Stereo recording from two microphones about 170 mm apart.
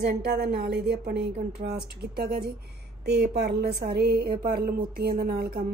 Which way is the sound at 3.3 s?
75° right (ahead or behind).